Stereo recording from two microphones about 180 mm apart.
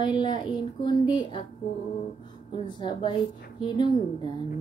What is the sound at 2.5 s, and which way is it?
Speech, 25° left (ahead or behind).